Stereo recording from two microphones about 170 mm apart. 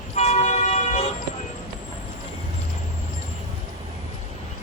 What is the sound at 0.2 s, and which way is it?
Vehicle, 40° left (ahead or behind).